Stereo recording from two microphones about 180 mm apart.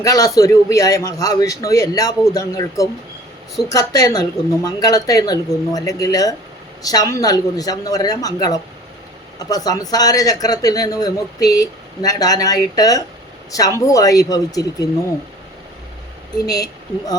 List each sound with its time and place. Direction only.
0.0 s speech: 20° left (ahead or behind)